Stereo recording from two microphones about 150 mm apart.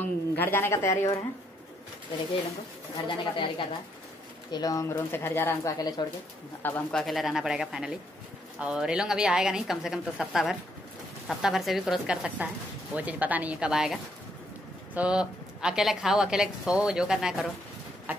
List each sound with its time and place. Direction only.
0.0 s a woman's voice: 15° left (ahead or behind)
3.1 s speech: 35° left (ahead or behind)
6.9 s a woman's voice: centre (ahead or behind)
15.0 s a woman's voice: 5° right (ahead or behind)